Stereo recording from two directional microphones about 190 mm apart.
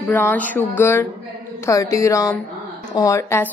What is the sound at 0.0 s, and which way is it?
Speech, 10° left (ahead or behind).